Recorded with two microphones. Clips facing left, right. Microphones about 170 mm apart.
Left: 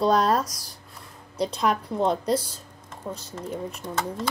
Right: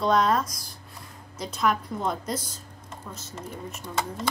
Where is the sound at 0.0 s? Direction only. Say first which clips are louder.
Left 2 dB; 35° left (ahead or behind).